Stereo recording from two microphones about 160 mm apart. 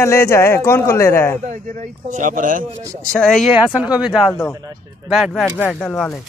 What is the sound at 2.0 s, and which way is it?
Speech, 50° right (ahead or behind).